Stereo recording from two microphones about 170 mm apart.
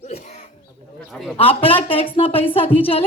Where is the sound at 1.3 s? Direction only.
35° left (ahead or behind).